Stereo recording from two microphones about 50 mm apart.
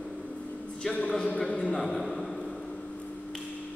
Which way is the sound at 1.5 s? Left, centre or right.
Left.